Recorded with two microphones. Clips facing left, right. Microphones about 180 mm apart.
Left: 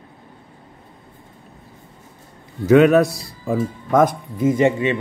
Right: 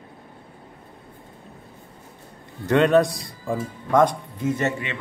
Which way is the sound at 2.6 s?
5° left (ahead or behind).